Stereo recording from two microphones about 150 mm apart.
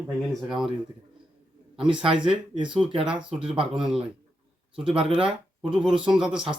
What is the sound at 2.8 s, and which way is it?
Speech, 35° right (ahead or behind).